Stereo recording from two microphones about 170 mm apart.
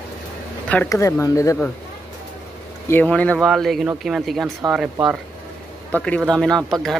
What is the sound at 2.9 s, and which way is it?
Speech, 10° left (ahead or behind).